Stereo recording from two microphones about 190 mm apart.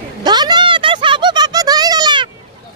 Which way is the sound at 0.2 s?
20° right (ahead or behind).